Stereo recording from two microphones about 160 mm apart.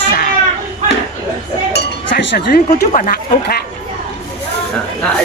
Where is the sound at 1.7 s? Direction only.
90° left.